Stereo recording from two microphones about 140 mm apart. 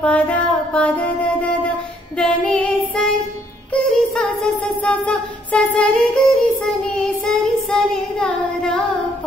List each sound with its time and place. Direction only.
0.0 s music: 10° left (ahead or behind)
2.1 s child singing: 5° left (ahead or behind)
3.7 s music: 5° left (ahead or behind)